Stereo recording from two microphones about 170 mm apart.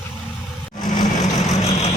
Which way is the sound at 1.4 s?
40° left (ahead or behind).